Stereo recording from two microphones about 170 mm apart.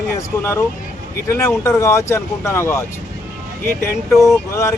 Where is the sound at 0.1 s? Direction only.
15° left (ahead or behind).